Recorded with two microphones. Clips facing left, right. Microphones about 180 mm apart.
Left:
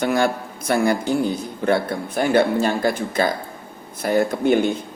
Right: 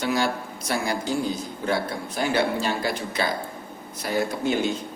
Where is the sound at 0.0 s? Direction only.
55° left (ahead or behind).